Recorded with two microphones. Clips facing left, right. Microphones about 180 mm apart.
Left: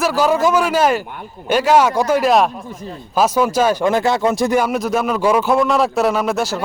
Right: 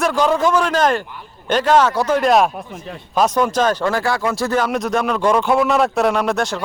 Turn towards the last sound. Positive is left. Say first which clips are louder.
# even
turn(degrees=5)  # may be behind; listen again after turning